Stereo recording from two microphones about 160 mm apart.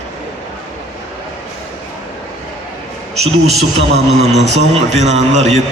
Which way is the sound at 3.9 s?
45° right (ahead or behind).